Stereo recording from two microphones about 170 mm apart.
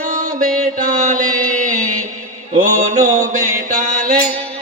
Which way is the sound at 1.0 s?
50° right (ahead or behind).